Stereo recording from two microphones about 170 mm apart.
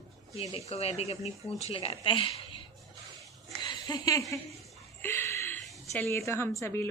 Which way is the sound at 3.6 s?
25° left (ahead or behind).